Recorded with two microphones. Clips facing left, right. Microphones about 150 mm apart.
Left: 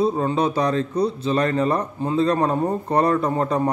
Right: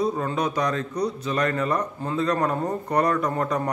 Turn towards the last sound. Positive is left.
turn(degrees=30)  # may be behind; listen again after turning